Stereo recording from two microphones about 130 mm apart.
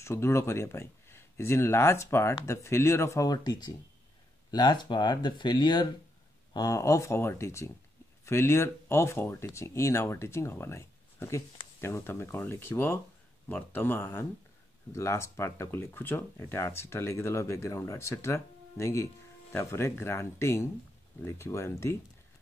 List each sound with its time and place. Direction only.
0.0 s speech: 20° left (ahead or behind)